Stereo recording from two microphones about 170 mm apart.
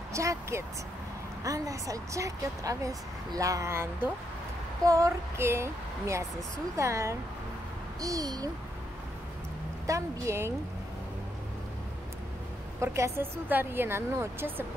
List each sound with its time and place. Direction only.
0.1 s a woman's voice: 20° right (ahead or behind)
9.8 s a woman's voice: 20° right (ahead or behind)
12.8 s a woman's voice: 15° right (ahead or behind)